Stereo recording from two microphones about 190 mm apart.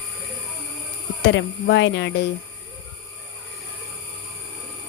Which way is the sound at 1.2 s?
70° left (ahead or behind).